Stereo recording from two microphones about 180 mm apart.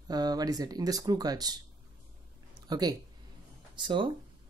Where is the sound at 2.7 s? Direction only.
20° right (ahead or behind).